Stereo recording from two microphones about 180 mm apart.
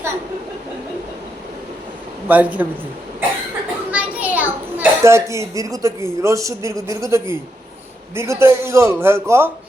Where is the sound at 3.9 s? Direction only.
10° right (ahead or behind).